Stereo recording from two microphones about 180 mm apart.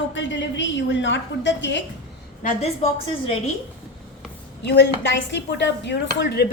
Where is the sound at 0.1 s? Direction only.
90° left.